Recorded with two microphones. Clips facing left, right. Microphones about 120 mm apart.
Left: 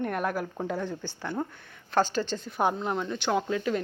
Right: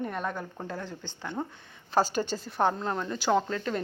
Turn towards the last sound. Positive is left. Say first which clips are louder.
# even
turn(degrees=10)  # may be behind; listen again after turning